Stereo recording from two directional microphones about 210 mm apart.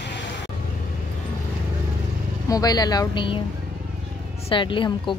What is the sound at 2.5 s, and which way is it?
Speech, 20° left (ahead or behind).